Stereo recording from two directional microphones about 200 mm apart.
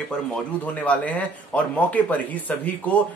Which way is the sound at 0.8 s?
5° left (ahead or behind).